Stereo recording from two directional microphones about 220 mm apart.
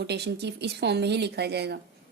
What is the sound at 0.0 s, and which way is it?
Speech, 50° right (ahead or behind).